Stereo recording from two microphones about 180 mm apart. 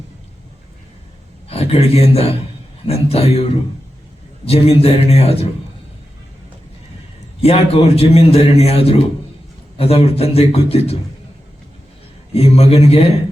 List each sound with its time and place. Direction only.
1.5 s a man's voice: 35° left (ahead or behind)
4.4 s a man's voice: 35° left (ahead or behind)
7.4 s a man's voice: 35° left (ahead or behind)
12.3 s a man's voice: 35° left (ahead or behind)